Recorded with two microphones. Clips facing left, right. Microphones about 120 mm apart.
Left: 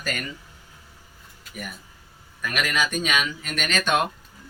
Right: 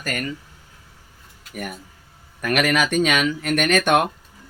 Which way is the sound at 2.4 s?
65° right (ahead or behind).